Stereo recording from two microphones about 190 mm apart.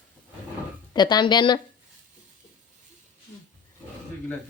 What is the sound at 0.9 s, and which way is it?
Speech, 25° left (ahead or behind).